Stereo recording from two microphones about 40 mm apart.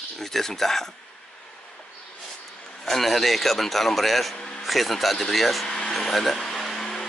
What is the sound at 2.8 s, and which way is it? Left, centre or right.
A man's voice, centre.